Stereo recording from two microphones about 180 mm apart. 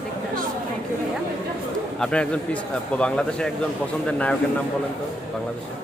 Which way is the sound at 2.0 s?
5° left (ahead or behind).